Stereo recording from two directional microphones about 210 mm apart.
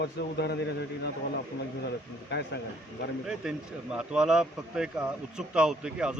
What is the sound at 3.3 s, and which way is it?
A man's voice, 5° right (ahead or behind).